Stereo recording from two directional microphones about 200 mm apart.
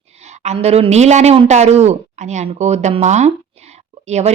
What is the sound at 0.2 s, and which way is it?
A woman's voice, 35° right (ahead or behind).